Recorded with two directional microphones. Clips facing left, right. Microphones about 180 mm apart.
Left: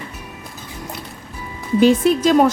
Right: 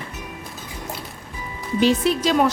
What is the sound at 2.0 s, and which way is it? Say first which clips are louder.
Speech: left 5 dB; 50° left (ahead or behind).